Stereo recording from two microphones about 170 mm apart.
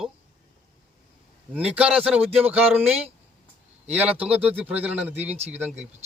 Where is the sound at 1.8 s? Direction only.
5° right (ahead or behind).